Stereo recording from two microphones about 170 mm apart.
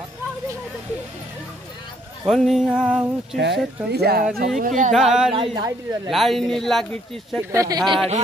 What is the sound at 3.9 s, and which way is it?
Speech, 70° right (ahead or behind).